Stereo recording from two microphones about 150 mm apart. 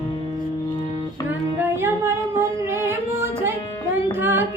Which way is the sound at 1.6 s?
15° right (ahead or behind).